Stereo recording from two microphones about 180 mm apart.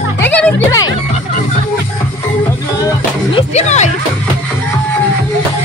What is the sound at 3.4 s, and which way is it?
Speech, 40° left (ahead or behind).